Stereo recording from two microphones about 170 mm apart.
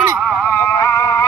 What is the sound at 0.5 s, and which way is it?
Music, 15° left (ahead or behind).